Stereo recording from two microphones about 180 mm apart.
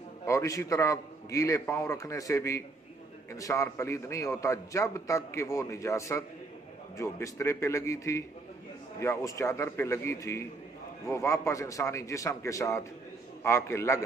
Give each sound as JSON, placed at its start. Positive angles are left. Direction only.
{"t": 0.3, "sound": "a man's voice", "side_deg": 20}